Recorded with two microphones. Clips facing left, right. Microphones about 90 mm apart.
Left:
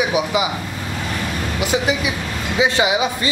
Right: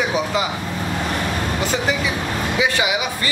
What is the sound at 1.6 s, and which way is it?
Speech, 10° left (ahead or behind).